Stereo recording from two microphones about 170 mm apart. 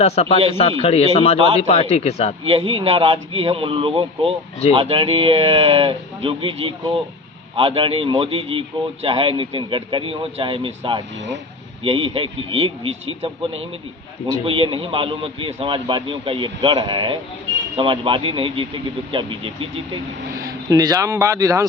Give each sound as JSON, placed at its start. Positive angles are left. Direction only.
{"t": 0.0, "sound": "a man's voice", "side_deg": 40}
{"t": 2.4, "sound": "a man's voice", "side_deg": -35}